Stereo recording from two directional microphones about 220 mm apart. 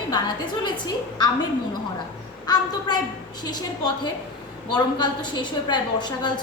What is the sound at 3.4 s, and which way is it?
A woman's voice, 20° left (ahead or behind).